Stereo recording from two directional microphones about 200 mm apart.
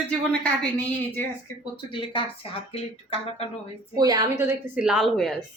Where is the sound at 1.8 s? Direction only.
25° left (ahead or behind).